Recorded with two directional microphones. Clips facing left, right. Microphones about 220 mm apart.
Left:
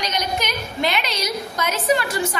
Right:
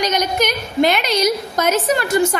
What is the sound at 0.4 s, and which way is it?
A woman's voice, 45° right (ahead or behind).